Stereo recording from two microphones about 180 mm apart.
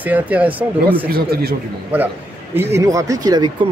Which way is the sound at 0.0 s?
10° right (ahead or behind).